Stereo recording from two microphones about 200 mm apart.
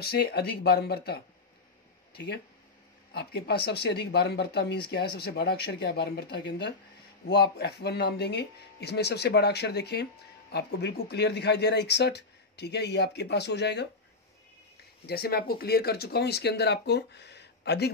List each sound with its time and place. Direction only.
0.0 s speech: 50° left (ahead or behind)
15.0 s speech: 50° left (ahead or behind)